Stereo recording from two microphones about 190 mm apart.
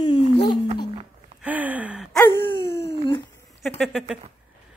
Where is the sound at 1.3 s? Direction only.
10° right (ahead or behind).